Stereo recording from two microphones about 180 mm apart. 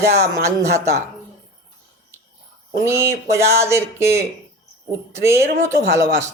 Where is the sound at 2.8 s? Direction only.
15° right (ahead or behind).